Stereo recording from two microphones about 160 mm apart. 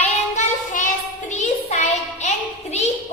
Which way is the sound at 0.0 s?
50° left (ahead or behind).